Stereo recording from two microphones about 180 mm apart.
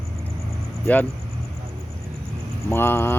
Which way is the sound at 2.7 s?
15° left (ahead or behind).